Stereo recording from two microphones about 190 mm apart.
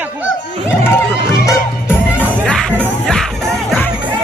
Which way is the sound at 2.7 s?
10° right (ahead or behind).